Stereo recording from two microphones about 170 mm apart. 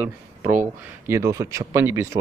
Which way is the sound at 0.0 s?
10° right (ahead or behind).